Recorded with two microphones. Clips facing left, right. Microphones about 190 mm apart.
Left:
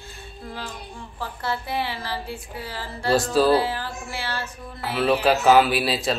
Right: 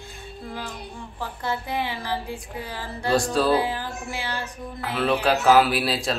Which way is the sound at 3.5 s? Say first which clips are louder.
Left 1 dB; 15° right (ahead or behind).